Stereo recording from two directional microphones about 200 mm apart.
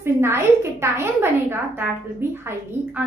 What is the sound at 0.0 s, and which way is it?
A child's voice, 10° right (ahead or behind).